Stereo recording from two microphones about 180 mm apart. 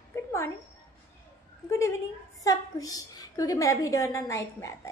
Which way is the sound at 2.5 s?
20° left (ahead or behind).